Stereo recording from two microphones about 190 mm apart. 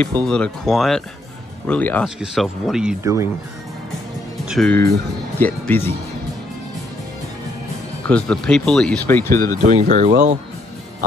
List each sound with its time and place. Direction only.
0.2 s speech: 5° left (ahead or behind)
2.0 s speech: 5° right (ahead or behind)
3.0 s speech: 15° right (ahead or behind)
4.5 s speech: centre (ahead or behind)
8.1 s speech: 5° left (ahead or behind)
9.6 s speech: 40° right (ahead or behind)